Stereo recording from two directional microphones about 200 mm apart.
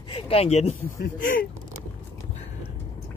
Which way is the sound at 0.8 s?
45° left (ahead or behind).